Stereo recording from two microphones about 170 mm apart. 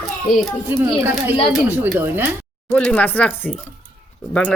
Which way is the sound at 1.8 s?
10° right (ahead or behind).